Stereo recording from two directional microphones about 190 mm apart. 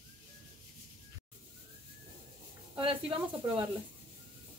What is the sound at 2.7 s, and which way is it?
Speech, 30° right (ahead or behind).